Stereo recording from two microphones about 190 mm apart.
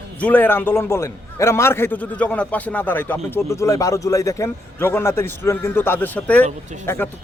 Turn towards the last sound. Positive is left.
turn(degrees=10)  # may be behind; listen again after turning